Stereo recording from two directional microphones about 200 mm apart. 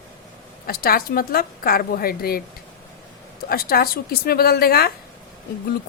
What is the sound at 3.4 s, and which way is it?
A woman's voice, 50° left (ahead or behind).